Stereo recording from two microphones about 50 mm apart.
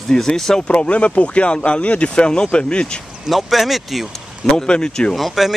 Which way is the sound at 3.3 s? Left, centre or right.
Centre.